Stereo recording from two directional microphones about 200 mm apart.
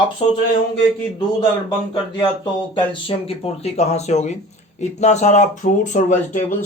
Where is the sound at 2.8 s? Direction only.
25° left (ahead or behind).